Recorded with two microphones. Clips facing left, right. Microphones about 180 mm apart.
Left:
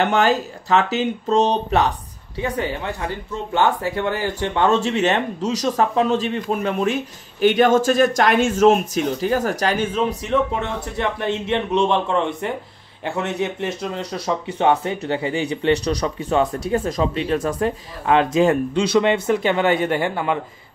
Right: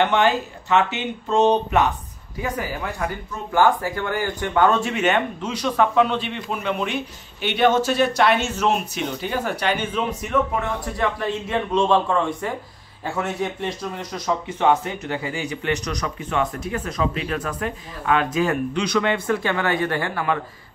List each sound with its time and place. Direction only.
0.0 s speech: 40° left (ahead or behind)
11.0 s speech: 25° left (ahead or behind)
14.6 s speech: 30° left (ahead or behind)